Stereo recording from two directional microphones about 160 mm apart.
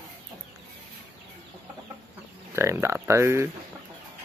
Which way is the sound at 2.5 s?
15° right (ahead or behind).